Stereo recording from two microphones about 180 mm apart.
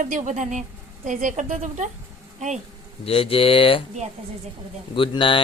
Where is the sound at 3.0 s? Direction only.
30° left (ahead or behind).